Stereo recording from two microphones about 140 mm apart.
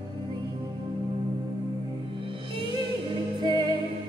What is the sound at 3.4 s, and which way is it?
Music, 30° right (ahead or behind).